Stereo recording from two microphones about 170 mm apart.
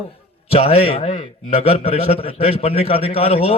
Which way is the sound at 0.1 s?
35° left (ahead or behind).